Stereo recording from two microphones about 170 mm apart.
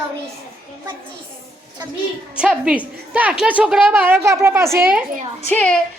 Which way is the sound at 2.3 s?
5° right (ahead or behind).